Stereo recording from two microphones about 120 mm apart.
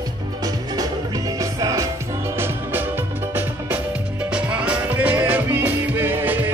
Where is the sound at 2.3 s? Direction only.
20° right (ahead or behind).